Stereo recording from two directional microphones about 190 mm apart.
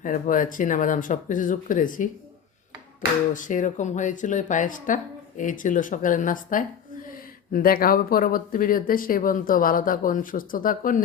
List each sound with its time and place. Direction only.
0.0 s speech: 45° left (ahead or behind)
3.3 s speech: 45° left (ahead or behind)